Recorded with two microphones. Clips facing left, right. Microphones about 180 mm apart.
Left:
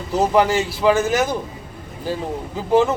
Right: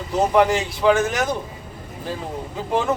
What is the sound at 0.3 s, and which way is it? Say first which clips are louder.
Speech: right 1 dB; 5° left (ahead or behind).